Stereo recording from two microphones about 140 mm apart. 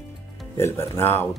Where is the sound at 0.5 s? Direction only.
20° left (ahead or behind).